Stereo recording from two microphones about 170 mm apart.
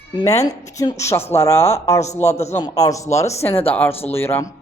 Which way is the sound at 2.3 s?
40° left (ahead or behind).